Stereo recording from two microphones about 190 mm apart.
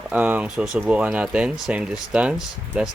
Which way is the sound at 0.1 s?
10° right (ahead or behind).